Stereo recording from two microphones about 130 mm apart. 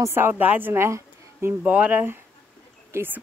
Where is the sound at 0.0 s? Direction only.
15° right (ahead or behind).